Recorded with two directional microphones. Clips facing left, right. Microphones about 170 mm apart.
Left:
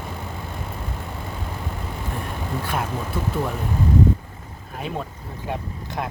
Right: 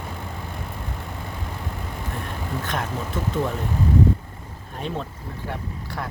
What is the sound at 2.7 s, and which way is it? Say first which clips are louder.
Speech: left 2 dB; 10° left (ahead or behind).